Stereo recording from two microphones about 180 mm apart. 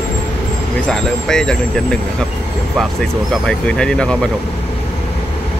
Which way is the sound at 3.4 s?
5° left (ahead or behind).